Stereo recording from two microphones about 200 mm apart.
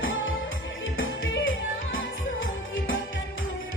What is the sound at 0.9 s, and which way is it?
Music, 75° left (ahead or behind).